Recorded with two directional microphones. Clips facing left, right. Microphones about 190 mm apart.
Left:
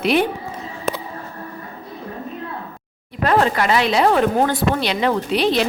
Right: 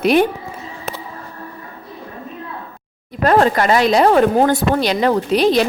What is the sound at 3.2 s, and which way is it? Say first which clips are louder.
A woman's voice: right 4 dB; 45° right (ahead or behind).